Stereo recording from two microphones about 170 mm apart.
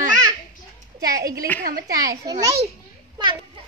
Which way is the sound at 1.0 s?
20° right (ahead or behind).